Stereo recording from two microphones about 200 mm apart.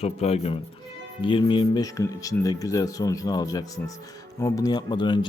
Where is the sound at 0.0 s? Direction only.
30° left (ahead or behind).